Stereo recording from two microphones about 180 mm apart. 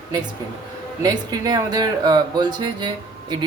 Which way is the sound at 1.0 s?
20° right (ahead or behind).